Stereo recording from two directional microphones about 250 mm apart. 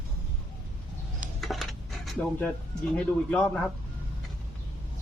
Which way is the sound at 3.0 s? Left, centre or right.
Centre.